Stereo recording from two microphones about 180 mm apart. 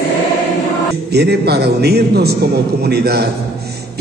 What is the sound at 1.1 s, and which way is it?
A woman's voice, 65° right (ahead or behind).